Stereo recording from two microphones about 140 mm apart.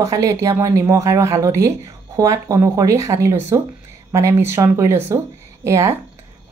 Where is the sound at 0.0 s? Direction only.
25° right (ahead or behind).